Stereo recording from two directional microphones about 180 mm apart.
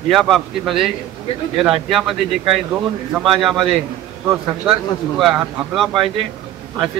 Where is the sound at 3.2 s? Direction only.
Centre (ahead or behind).